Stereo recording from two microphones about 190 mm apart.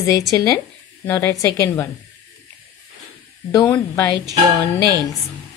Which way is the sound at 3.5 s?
15° left (ahead or behind).